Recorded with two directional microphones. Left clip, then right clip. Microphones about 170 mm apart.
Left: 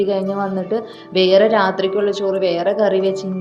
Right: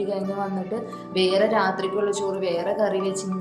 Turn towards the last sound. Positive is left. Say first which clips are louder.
# left 7 dB
turn(degrees=30)  # may be behind; listen again after turning